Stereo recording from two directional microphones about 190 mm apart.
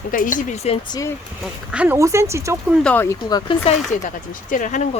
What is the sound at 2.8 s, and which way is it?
Speech, 10° left (ahead or behind).